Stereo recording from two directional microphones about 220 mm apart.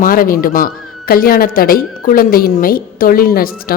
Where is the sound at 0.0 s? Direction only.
40° left (ahead or behind).